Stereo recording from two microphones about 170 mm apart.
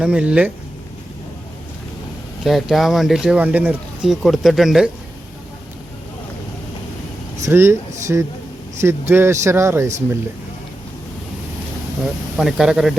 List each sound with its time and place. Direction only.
0.0 s speech: 5° right (ahead or behind)
2.4 s speech: centre (ahead or behind)
7.4 s speech: 15° right (ahead or behind)
12.4 s speech: 5° right (ahead or behind)